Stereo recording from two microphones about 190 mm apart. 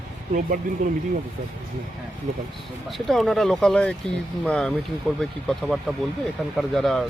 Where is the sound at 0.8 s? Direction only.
45° right (ahead or behind).